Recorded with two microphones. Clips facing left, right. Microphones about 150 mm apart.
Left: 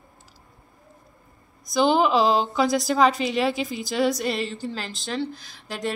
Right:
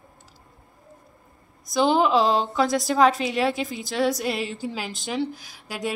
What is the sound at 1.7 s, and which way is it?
A woman's voice, centre (ahead or behind).